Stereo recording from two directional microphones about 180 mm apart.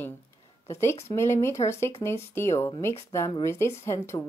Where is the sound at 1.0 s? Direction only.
15° left (ahead or behind).